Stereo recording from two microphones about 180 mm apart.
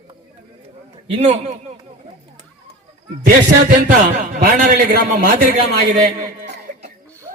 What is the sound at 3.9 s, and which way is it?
A man's voice, 50° right (ahead or behind).